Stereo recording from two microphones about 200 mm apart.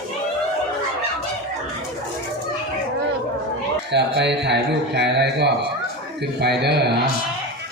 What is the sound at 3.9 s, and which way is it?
A man's voice, 60° right (ahead or behind).